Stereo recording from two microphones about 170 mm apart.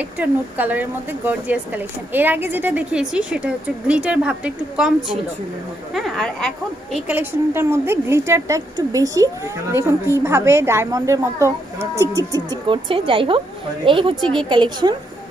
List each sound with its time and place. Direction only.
0.2 s a woman's voice: 10° right (ahead or behind)
5.9 s speech: centre (ahead or behind)
7.1 s a woman's voice: 10° right (ahead or behind); by 14.1 s 30° right (ahead or behind)
14.2 s speech: 5° left (ahead or behind)
14.5 s speech: 25° right (ahead or behind)